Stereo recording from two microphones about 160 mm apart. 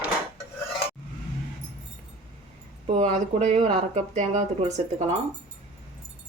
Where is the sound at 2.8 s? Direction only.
45° right (ahead or behind).